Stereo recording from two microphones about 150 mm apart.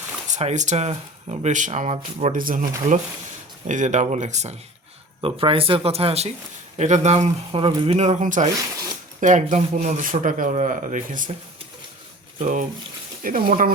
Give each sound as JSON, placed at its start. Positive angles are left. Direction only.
{"t": 0.3, "sound": "speech", "side_deg": -50}
{"t": 2.4, "sound": "speech", "side_deg": -65}
{"t": 5.2, "sound": "speech", "side_deg": -40}
{"t": 7.9, "sound": "speech", "side_deg": -50}
{"t": 12.4, "sound": "speech", "side_deg": -55}
{"t": 13.2, "sound": "speech", "side_deg": -65}